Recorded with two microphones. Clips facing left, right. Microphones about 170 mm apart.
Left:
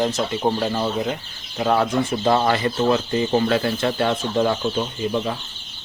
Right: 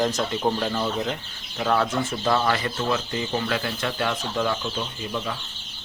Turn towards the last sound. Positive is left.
turn(degrees=30)  # may be behind; listen again after turning